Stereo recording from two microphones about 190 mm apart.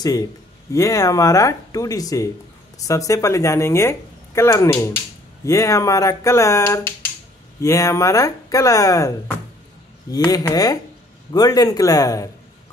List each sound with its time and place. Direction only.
0.0 s speech: 20° left (ahead or behind)
10.1 s speech: 20° left (ahead or behind)